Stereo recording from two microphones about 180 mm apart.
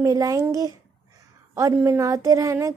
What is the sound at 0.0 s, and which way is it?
A woman's voice, 20° right (ahead or behind).